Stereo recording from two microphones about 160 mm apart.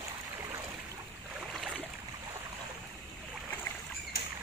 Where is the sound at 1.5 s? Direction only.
5° right (ahead or behind).